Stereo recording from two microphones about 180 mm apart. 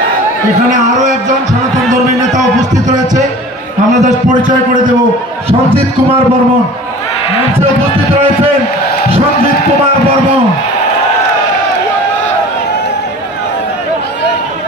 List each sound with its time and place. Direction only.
4.0 s a man's voice: 45° right (ahead or behind)